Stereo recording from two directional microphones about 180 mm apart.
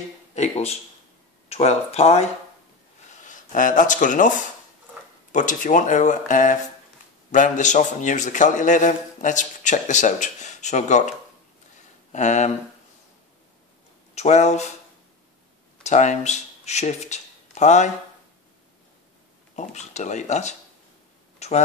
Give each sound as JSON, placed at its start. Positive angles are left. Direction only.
{"t": 0.3, "sound": "speech", "side_deg": 40}
{"t": 3.2, "sound": "speech", "side_deg": 45}
{"t": 5.3, "sound": "a man's voice", "side_deg": 45}
{"t": 12.1, "sound": "speech", "side_deg": 40}
{"t": 14.1, "sound": "speech", "side_deg": 40}
{"t": 15.8, "sound": "speech", "side_deg": 40}
{"t": 19.5, "sound": "speech", "side_deg": 40}
{"t": 21.4, "sound": "a sound", "side_deg": 35}